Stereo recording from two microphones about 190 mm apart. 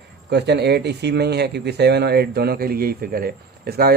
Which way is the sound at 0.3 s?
60° right (ahead or behind).